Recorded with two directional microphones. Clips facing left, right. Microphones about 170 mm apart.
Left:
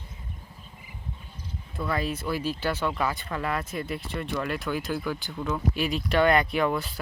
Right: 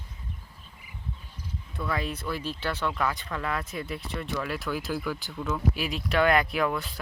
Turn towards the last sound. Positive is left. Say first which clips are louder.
# left 2 dB
turn(degrees=0)  # may be behind; listen again after turning